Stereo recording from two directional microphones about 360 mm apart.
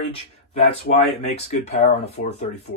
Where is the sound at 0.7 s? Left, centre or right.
Centre.